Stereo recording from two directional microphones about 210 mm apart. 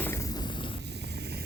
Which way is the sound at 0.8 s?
55° right (ahead or behind).